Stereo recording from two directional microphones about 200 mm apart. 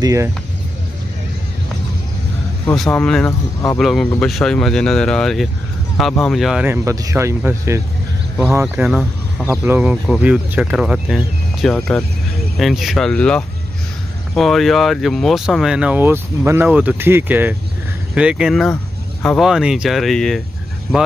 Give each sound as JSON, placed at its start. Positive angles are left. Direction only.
{"t": 0.0, "sound": "speech", "side_deg": -15}
{"t": 2.6, "sound": "speech", "side_deg": 5}